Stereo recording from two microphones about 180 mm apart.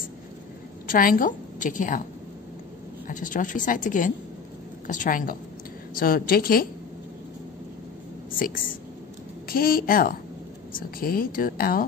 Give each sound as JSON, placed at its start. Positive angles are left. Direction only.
{"t": 0.8, "sound": "a woman's voice", "side_deg": 50}
{"t": 3.1, "sound": "a woman's voice", "side_deg": 45}
{"t": 8.4, "sound": "a woman's voice", "side_deg": 50}